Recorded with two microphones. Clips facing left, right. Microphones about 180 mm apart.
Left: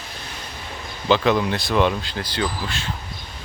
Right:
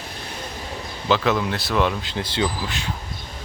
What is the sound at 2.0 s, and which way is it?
Speech, 20° right (ahead or behind).